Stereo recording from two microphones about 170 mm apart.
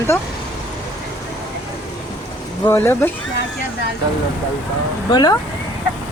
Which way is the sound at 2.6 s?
15° left (ahead or behind).